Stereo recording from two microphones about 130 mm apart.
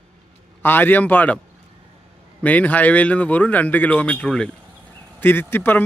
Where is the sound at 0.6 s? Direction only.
15° left (ahead or behind).